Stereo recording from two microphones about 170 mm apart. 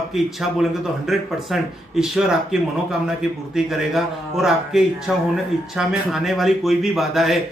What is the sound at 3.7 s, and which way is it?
Speech, centre (ahead or behind).